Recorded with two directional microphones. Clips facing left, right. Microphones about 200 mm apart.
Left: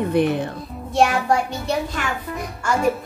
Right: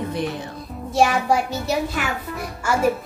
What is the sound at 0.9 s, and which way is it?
Child singing, centre (ahead or behind).